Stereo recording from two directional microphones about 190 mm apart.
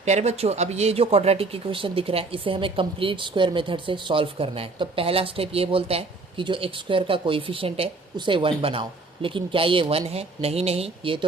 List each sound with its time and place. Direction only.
0.0 s speech: 35° right (ahead or behind)